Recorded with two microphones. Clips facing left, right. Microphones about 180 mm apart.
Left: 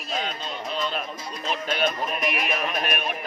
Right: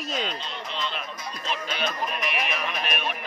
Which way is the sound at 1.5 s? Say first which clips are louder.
Left 4 dB; 45° left (ahead or behind).